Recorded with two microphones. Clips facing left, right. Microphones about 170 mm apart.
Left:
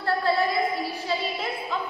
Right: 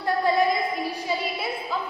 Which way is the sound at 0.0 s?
15° right (ahead or behind).